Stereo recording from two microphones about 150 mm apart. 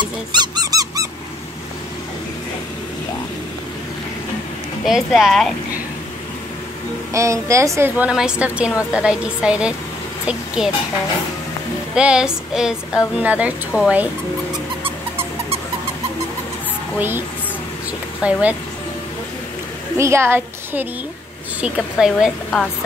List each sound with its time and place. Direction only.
0.0 s squeak: 25° right (ahead or behind)
4.8 s speech: centre (ahead or behind)
7.1 s a woman's voice: 20° right (ahead or behind)
11.9 s a woman's voice: 5° right (ahead or behind)
18.2 s a woman's voice: 10° right (ahead or behind)
20.0 s a woman's voice: 15° right (ahead or behind)